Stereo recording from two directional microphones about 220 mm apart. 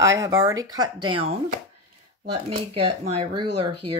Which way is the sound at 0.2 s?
15° right (ahead or behind).